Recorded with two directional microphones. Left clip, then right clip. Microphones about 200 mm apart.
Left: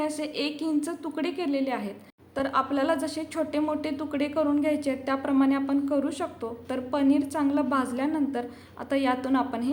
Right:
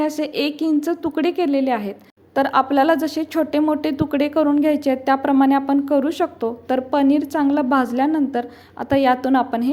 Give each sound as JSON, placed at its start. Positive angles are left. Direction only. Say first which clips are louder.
{"t": 0.0, "sound": "a woman's voice", "louder": "right 8 dB", "side_deg": -35}